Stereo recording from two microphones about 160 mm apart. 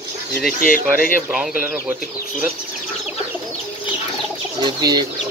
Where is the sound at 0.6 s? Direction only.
60° left (ahead or behind).